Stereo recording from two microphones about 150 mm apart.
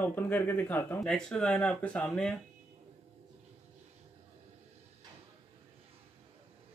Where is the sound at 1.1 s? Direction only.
5° left (ahead or behind).